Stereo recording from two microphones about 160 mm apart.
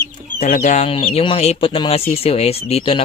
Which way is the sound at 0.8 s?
35° left (ahead or behind).